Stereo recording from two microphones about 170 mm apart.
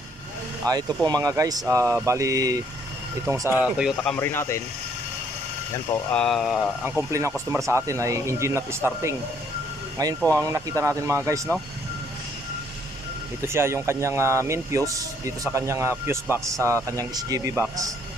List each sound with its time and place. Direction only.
0.7 s speech: 25° right (ahead or behind); by 3.9 s 5° right (ahead or behind)
3.9 s speech: 5° left (ahead or behind)
6.1 s speech: centre (ahead or behind)
6.8 s speech: 15° right (ahead or behind)
10.3 s speech: 20° right (ahead or behind)
13.4 s speech: 15° right (ahead or behind)